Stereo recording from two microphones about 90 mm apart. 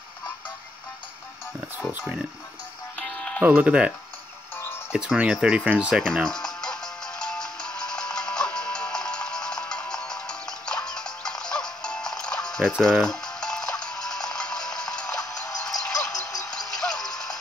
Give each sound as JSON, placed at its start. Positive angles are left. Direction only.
{"t": 1.8, "sound": "speech", "side_deg": -15}
{"t": 3.0, "sound": "music", "side_deg": 10}
{"t": 3.4, "sound": "speech", "side_deg": -15}
{"t": 4.9, "sound": "speech", "side_deg": -10}
{"t": 6.2, "sound": "music", "side_deg": 5}
{"t": 15.6, "sound": "a sound", "side_deg": 5}
{"t": 16.4, "sound": "music", "side_deg": 5}